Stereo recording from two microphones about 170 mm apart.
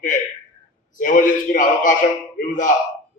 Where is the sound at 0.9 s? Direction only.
50° left (ahead or behind).